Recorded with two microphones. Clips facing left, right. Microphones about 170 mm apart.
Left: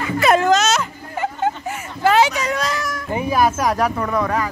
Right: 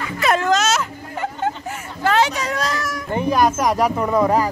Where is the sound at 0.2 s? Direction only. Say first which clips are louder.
Left 3 dB; 10° left (ahead or behind).